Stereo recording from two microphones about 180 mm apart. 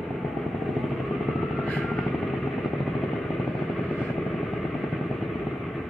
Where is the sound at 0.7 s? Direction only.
Centre (ahead or behind).